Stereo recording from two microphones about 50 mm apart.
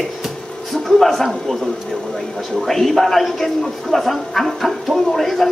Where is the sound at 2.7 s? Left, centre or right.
Centre.